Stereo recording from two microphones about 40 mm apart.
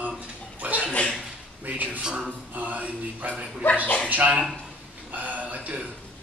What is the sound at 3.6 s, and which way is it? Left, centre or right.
Speech, left.